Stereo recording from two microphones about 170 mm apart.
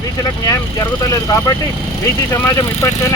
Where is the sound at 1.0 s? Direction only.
20° left (ahead or behind).